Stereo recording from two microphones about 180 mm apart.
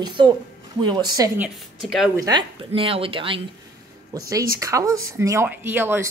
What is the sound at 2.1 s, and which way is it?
A woman's voice, 20° right (ahead or behind).